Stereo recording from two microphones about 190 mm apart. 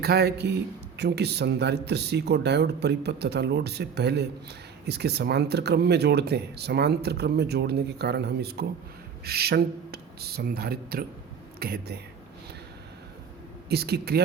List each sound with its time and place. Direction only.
0.0 s speech: 55° right (ahead or behind)
13.7 s speech: 60° right (ahead or behind)